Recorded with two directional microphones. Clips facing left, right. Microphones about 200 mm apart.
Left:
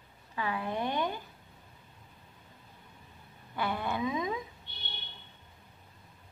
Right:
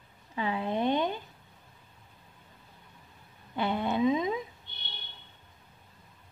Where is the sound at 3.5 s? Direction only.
20° right (ahead or behind).